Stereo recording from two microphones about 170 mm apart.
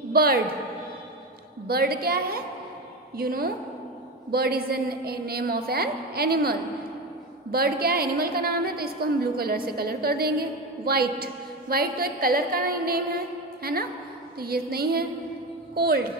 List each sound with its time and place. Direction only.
0.1 s a woman's voice: 65° right (ahead or behind)
1.7 s a woman's voice: 65° right (ahead or behind)